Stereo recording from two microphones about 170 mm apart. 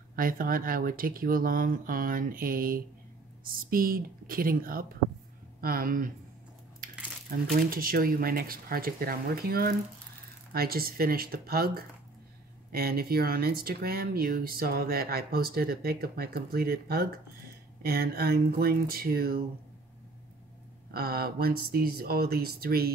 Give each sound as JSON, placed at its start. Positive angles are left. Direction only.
{"t": 0.1, "sound": "speech", "side_deg": -55}
{"t": 7.5, "sound": "speech", "side_deg": -60}
{"t": 20.9, "sound": "speech", "side_deg": -65}